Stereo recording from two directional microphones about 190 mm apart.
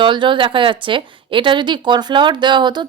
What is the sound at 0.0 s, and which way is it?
A woman's voice, 25° right (ahead or behind).